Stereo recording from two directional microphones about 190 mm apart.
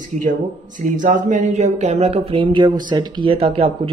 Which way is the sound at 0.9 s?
45° right (ahead or behind).